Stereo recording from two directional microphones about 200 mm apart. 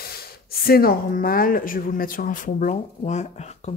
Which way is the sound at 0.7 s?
50° left (ahead or behind).